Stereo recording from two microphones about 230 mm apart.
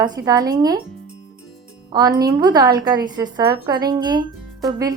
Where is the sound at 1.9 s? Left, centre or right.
Centre.